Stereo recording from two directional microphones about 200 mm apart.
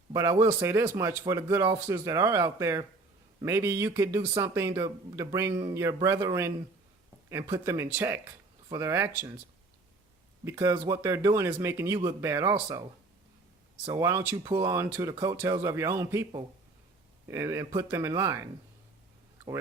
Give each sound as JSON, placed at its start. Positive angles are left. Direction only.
{"t": 0.1, "sound": "a man's voice", "side_deg": -15}
{"t": 10.4, "sound": "a man's voice", "side_deg": -15}
{"t": 13.8, "sound": "a man's voice", "side_deg": -15}
{"t": 17.3, "sound": "a man's voice", "side_deg": -15}